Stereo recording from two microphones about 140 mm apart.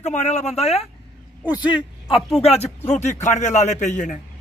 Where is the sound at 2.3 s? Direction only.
50° left (ahead or behind).